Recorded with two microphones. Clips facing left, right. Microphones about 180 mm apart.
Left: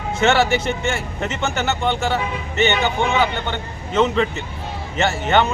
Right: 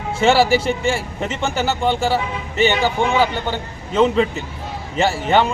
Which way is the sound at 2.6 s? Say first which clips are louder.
Right 2 dB; 30° right (ahead or behind).